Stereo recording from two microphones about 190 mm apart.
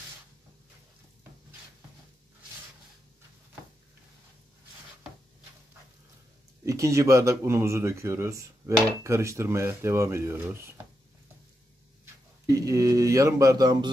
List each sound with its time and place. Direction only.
6.6 s speech: 15° right (ahead or behind)
12.4 s speech: 15° right (ahead or behind)